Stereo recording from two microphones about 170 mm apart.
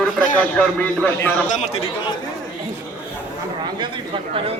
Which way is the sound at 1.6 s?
35° left (ahead or behind).